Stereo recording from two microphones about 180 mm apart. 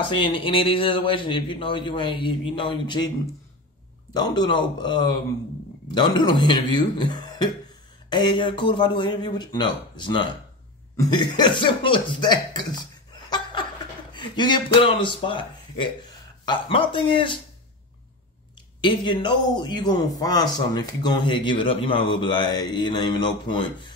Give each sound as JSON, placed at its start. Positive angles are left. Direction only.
{"t": 0.1, "sound": "speech", "side_deg": 30}
{"t": 4.1, "sound": "speech", "side_deg": 25}
{"t": 18.8, "sound": "speech", "side_deg": 25}